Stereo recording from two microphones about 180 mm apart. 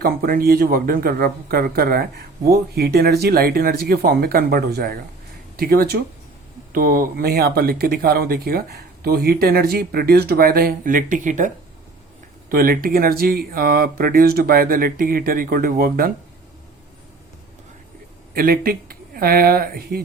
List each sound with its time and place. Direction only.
0.0 s speech: 55° right (ahead or behind)
18.3 s speech: 55° right (ahead or behind)